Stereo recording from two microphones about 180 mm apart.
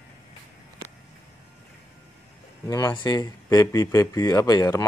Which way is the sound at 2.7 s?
20° left (ahead or behind).